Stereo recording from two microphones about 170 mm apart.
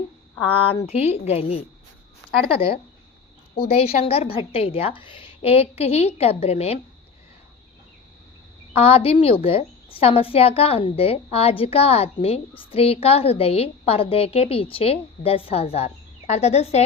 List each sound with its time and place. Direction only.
0.4 s a woman's voice: 35° left (ahead or behind)
8.7 s a woman's voice: 35° left (ahead or behind)